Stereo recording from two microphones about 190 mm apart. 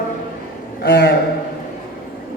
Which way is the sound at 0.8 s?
55° left (ahead or behind).